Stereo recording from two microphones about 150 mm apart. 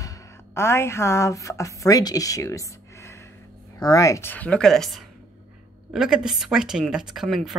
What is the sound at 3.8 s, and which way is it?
A woman's voice, 25° left (ahead or behind).